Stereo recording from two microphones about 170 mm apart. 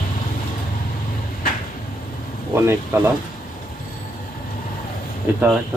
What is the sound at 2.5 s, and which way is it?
Speech, 15° right (ahead or behind).